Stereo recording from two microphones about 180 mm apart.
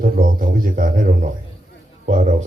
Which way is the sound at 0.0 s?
50° right (ahead or behind).